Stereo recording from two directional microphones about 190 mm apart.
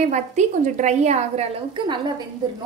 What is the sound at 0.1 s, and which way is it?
A woman's voice, 40° right (ahead or behind).